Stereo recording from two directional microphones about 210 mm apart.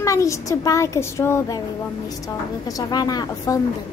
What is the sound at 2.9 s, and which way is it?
Speech, 20° left (ahead or behind).